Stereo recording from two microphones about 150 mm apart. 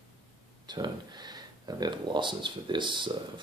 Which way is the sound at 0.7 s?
30° right (ahead or behind).